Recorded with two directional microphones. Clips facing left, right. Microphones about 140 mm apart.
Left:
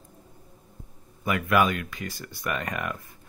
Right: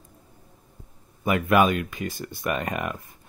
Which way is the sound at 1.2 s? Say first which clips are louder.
Right 3 dB; 25° right (ahead or behind).